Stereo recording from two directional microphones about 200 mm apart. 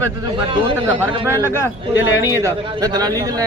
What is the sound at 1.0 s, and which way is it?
Speech, 10° right (ahead or behind).